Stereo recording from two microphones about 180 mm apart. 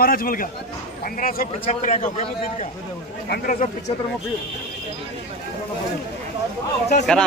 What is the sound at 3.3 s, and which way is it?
Speech, 50° left (ahead or behind).